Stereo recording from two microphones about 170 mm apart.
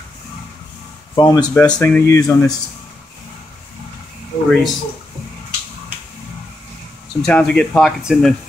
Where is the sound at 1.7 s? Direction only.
10° left (ahead or behind).